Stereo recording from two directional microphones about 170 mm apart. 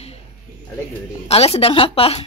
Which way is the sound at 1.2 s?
35° left (ahead or behind).